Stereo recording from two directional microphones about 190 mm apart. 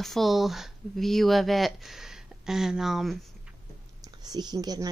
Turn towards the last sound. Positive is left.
turn(degrees=-20)  # may be behind; listen again after turning